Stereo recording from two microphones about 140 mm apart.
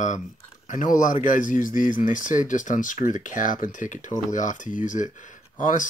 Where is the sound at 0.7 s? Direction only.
70° left (ahead or behind).